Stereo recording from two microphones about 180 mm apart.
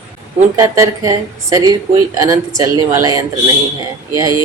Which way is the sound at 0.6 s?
15° right (ahead or behind).